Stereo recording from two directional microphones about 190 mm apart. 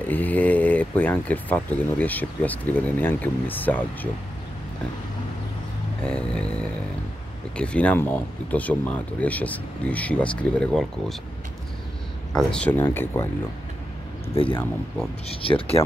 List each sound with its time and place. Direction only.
0.1 s speech: 10° left (ahead or behind)
6.0 s a sound: 5° left (ahead or behind)
7.5 s speech: 5° left (ahead or behind)
12.3 s speech: 5° left (ahead or behind)
15.4 s speech: 30° left (ahead or behind)